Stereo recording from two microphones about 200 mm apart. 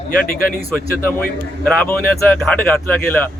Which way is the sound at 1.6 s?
10° left (ahead or behind).